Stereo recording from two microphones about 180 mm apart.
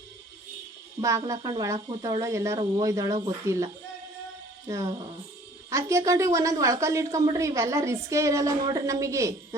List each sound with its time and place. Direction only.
1.0 s a woman's voice: 15° right (ahead or behind)
4.7 s a woman's voice: 15° right (ahead or behind)